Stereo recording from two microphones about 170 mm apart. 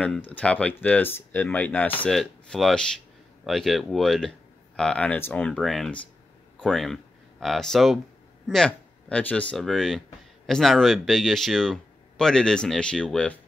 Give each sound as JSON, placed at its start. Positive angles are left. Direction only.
{"t": 0.0, "sound": "speech", "side_deg": 10}